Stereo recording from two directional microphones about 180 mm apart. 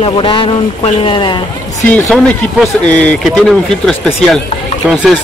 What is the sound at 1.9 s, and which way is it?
Speech, 5° left (ahead or behind).